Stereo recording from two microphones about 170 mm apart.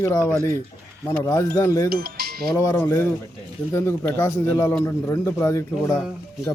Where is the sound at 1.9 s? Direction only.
65° right (ahead or behind).